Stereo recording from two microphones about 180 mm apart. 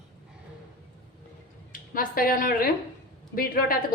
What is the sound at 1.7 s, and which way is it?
A woman's voice, 50° left (ahead or behind).